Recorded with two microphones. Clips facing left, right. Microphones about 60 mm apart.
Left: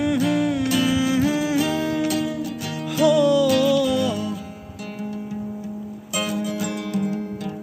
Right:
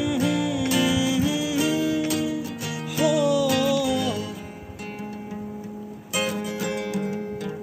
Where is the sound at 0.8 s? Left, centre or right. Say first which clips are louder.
Left 2 dB; left.